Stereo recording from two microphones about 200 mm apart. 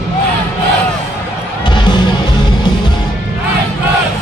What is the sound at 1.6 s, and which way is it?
Music, 20° left (ahead or behind).